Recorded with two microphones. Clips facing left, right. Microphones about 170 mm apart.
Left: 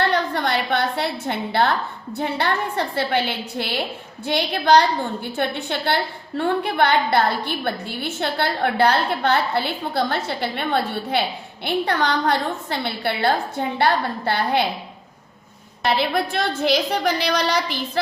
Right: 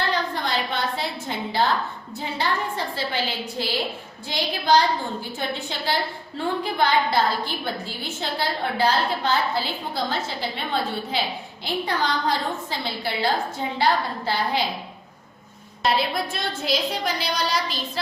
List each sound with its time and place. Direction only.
0.0 s a woman's voice: 60° left (ahead or behind)
15.8 s a woman's voice: 65° left (ahead or behind)